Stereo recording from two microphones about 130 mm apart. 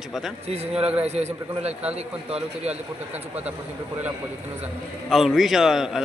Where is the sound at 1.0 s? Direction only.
55° right (ahead or behind).